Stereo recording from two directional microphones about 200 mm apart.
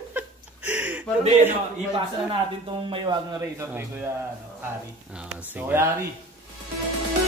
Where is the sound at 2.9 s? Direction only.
20° right (ahead or behind).